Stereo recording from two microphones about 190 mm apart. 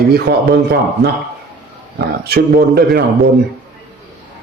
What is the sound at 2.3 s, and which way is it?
Speech, 55° right (ahead or behind).